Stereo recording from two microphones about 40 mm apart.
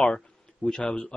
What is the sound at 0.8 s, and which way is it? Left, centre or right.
Speech, left.